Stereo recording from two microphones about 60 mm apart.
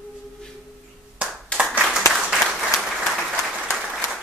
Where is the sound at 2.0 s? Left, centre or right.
Left.